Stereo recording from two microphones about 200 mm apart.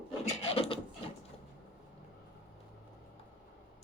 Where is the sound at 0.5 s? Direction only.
30° left (ahead or behind).